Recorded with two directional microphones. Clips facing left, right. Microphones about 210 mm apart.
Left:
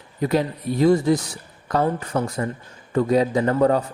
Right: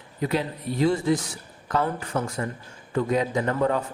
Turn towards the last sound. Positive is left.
turn(degrees=35)  # may be behind; listen again after turning